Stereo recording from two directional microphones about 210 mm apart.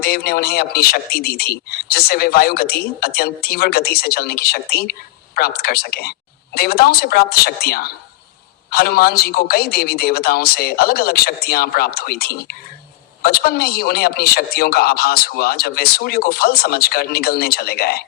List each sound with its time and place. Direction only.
0.0 s speech: 45° left (ahead or behind)